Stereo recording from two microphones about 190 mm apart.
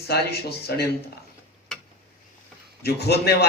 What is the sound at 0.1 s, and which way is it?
Speech, 55° left (ahead or behind).